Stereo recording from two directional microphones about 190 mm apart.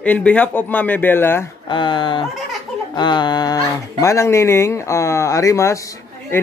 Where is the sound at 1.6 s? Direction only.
25° left (ahead or behind).